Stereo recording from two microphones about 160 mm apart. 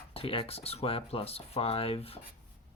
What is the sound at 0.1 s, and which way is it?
Speech, 35° left (ahead or behind).